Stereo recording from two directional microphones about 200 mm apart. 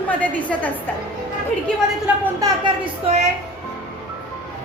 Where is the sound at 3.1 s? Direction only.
30° right (ahead or behind).